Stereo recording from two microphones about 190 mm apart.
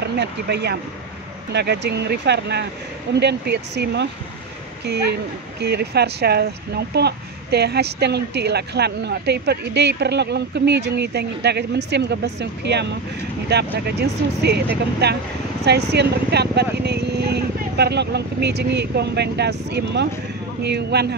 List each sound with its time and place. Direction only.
0.0 s speech: 60° right (ahead or behind)